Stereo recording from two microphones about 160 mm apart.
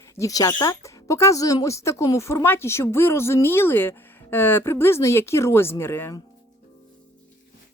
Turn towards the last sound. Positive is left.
turn(degrees=15)  # may be behind; listen again after turning